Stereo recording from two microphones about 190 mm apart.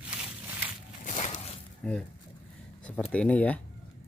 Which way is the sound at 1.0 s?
40° left (ahead or behind).